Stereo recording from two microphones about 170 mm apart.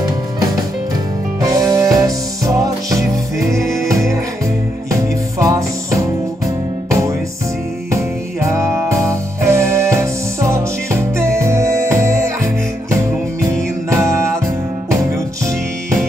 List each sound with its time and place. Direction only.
1.7 s music: 20° right (ahead or behind)
3.6 s music: centre (ahead or behind)
5.4 s music: 20° right (ahead or behind)
13.5 s music: 15° right (ahead or behind)